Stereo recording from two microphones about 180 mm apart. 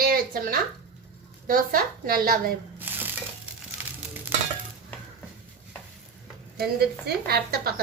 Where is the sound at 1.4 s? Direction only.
50° right (ahead or behind).